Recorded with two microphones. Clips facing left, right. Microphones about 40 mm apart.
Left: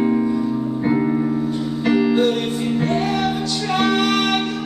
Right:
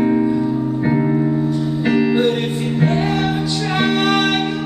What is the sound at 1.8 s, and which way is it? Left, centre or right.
Music, centre.